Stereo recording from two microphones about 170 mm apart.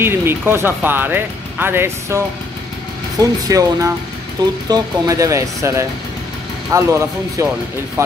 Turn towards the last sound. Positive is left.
turn(degrees=-20)  # may be behind; listen again after turning